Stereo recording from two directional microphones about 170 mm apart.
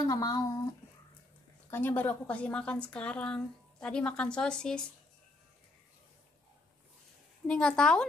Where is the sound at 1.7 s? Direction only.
10° left (ahead or behind).